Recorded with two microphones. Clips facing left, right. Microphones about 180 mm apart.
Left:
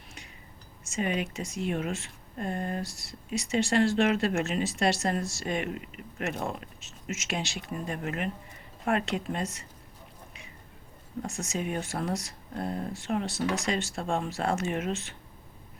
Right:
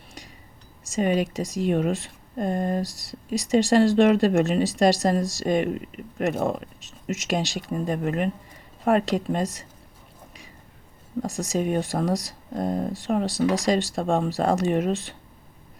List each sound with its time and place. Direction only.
0.9 s speech: 35° right (ahead or behind)
11.2 s speech: 35° right (ahead or behind)